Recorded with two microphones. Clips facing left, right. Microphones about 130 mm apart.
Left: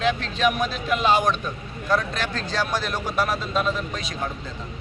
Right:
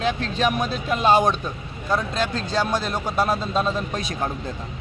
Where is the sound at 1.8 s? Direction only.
25° right (ahead or behind).